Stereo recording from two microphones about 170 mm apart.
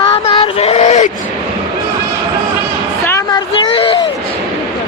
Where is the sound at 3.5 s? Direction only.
30° left (ahead or behind).